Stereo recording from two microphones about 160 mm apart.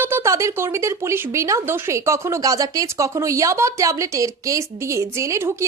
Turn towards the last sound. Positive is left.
turn(degrees=-15)  # may be behind; listen again after turning